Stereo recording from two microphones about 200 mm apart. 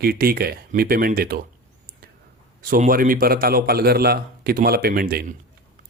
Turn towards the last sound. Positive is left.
turn(degrees=-45)  # may be behind; listen again after turning